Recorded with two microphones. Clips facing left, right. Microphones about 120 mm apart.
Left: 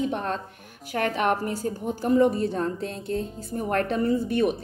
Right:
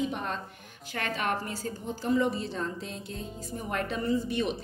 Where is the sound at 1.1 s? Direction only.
60° left (ahead or behind).